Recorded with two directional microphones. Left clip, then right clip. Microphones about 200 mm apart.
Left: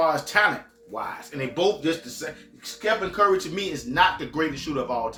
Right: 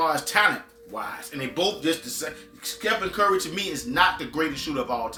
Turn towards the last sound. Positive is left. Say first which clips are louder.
# even
turn(degrees=-15)  # may be behind; listen again after turning